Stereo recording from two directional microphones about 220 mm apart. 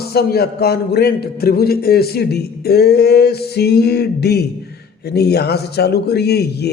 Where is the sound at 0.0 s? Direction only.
45° left (ahead or behind).